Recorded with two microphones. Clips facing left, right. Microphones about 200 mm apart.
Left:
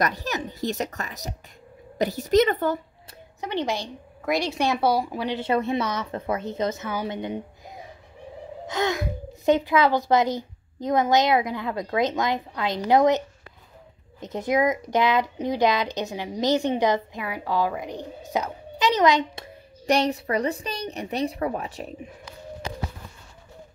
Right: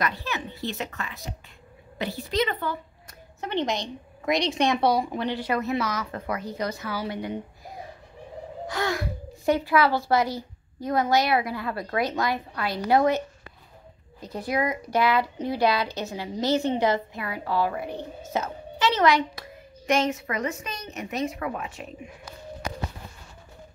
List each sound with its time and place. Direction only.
0.0 s a woman's voice: 40° left (ahead or behind)
3.3 s a woman's voice: 10° left (ahead or behind)
5.3 s speech: 25° left (ahead or behind)
14.2 s speech: 20° left (ahead or behind)